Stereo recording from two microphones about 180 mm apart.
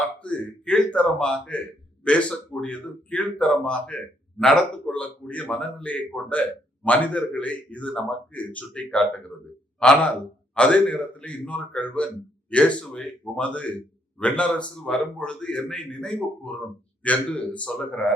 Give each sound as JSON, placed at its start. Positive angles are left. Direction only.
{"t": 0.2, "sound": "a man's voice", "side_deg": 5}